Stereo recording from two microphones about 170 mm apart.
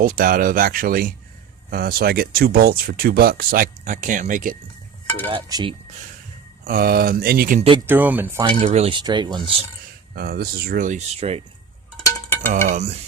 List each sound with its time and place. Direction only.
0.0 s speech: 55° right (ahead or behind)
5.3 s speech: 25° right (ahead or behind)
6.7 s speech: 60° right (ahead or behind)
7.9 s speech: 10° right (ahead or behind)
8.4 s speech: 35° right (ahead or behind)
10.2 s speech: 65° right (ahead or behind); by 11.4 s 35° right (ahead or behind)
12.0 s a sound: 15° left (ahead or behind)
12.5 s stir: 50° right (ahead or behind)